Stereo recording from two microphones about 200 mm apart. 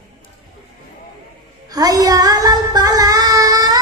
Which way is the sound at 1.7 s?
20° right (ahead or behind).